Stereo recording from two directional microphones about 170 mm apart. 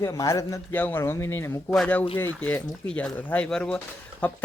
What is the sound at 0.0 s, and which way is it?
Speech, 20° left (ahead or behind).